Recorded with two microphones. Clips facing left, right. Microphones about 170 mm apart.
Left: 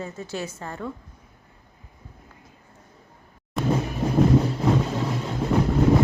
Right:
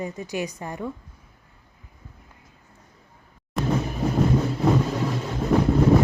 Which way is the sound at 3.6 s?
Centre (ahead or behind).